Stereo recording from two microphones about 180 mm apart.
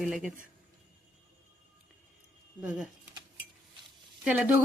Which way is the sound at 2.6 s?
5° right (ahead or behind).